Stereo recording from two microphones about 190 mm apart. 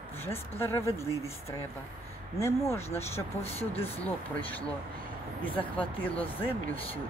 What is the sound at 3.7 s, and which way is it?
Speech, 30° left (ahead or behind).